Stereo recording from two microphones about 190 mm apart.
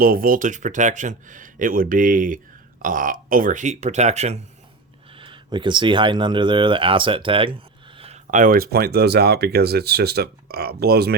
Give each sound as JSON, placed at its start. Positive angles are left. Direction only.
{"t": 0.0, "sound": "speech", "side_deg": -50}